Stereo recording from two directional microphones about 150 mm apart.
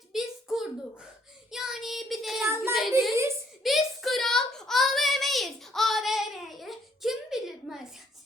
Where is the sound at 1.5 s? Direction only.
5° right (ahead or behind).